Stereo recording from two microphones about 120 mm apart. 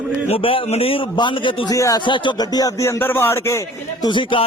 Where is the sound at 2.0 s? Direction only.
40° left (ahead or behind); by 4.1 s 25° left (ahead or behind).